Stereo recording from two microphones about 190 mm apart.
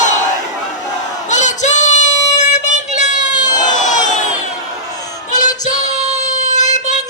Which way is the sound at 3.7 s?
40° left (ahead or behind).